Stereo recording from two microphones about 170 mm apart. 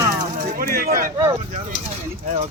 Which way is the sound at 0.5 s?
60° right (ahead or behind).